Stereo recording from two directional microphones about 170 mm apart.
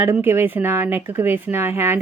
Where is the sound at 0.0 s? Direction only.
15° right (ahead or behind).